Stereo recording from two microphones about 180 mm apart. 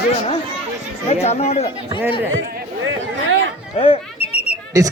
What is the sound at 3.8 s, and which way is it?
Bird, 35° left (ahead or behind).